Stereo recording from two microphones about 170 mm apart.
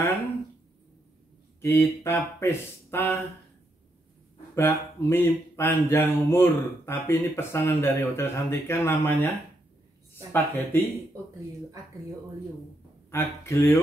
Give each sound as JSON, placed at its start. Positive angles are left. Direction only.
{"t": 1.6, "sound": "mantra", "side_deg": 15}
{"t": 4.6, "sound": "mantra", "side_deg": 15}
{"t": 10.3, "sound": "mantra", "side_deg": 15}
{"t": 13.1, "sound": "mantra", "side_deg": 15}